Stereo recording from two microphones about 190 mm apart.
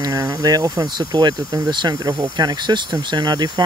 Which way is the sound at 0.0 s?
20° right (ahead or behind).